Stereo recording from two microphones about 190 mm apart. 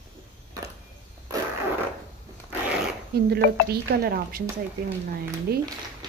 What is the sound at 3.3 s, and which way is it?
A woman's voice, 55° right (ahead or behind).